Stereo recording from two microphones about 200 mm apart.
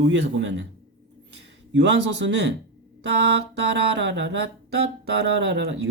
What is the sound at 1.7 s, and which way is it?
Speech, 60° right (ahead or behind).